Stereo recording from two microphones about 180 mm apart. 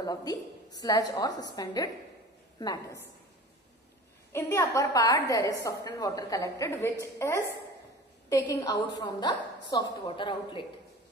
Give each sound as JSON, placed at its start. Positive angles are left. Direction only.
{"t": 0.0, "sound": "a woman's voice", "side_deg": 20}
{"t": 4.3, "sound": "a woman's voice", "side_deg": 10}